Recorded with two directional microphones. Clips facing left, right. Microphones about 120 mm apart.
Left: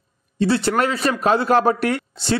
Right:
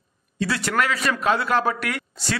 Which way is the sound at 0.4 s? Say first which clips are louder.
Left 5 dB; 30° left (ahead or behind).